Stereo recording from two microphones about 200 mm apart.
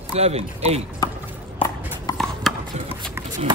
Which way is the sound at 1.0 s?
20° left (ahead or behind).